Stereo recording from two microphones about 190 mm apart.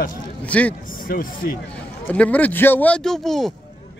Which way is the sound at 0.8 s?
45° left (ahead or behind).